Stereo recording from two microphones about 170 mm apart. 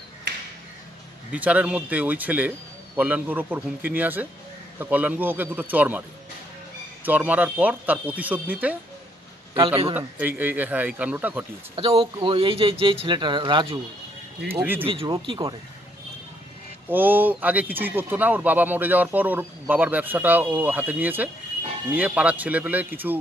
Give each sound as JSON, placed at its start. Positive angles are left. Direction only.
{"t": 1.3, "sound": "speech", "side_deg": -10}
{"t": 7.1, "sound": "speech", "side_deg": -10}
{"t": 9.9, "sound": "speech", "side_deg": -10}
{"t": 11.7, "sound": "speech", "side_deg": -30}
{"t": 14.5, "sound": "speech", "side_deg": -10}
{"t": 14.9, "sound": "speech", "side_deg": -30}
{"t": 16.9, "sound": "speech", "side_deg": -10}